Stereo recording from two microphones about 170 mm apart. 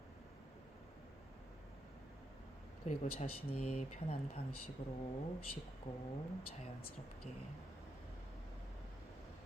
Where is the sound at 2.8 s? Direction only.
50° left (ahead or behind).